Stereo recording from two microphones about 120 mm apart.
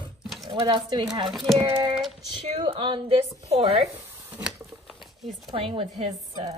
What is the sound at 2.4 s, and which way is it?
A woman's voice, 55° right (ahead or behind).